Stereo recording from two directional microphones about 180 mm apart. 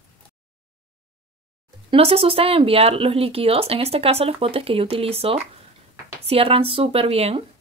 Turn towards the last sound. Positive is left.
turn(degrees=-35)  # may be behind; listen again after turning